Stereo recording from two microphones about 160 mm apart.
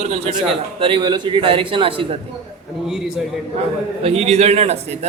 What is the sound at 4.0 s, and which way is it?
Speech, 40° right (ahead or behind).